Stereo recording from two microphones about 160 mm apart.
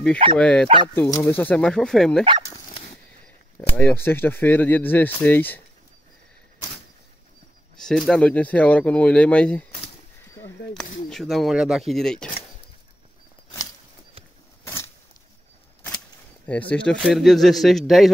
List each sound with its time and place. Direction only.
0.4 s speech: 5° left (ahead or behind)
0.9 s speech: 20° left (ahead or behind)
3.7 s speech: 10° left (ahead or behind)
7.7 s speech: 5° left (ahead or behind)
11.1 s speech: centre (ahead or behind)
14.6 s a sound: 15° left (ahead or behind)
16.4 s speech: 10° left (ahead or behind)